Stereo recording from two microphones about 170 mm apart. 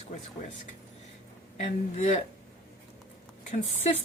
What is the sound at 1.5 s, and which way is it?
Speech, 40° left (ahead or behind).